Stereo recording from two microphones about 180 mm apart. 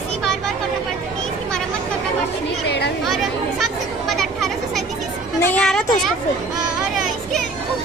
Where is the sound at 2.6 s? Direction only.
65° left (ahead or behind).